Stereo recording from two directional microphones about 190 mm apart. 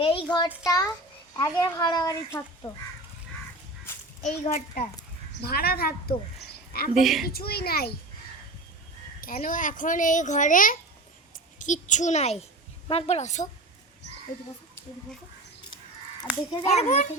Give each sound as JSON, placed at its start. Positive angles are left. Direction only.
{"t": 0.0, "sound": "a child's voice", "side_deg": 30}
{"t": 4.2, "sound": "a child's voice", "side_deg": 35}
{"t": 5.4, "sound": "a child's voice", "side_deg": 55}
{"t": 6.9, "sound": "a woman's voice", "side_deg": 0}
{"t": 7.3, "sound": "a child's voice", "side_deg": 55}
{"t": 9.2, "sound": "a child's voice", "side_deg": 45}
{"t": 16.6, "sound": "a child's voice", "side_deg": 35}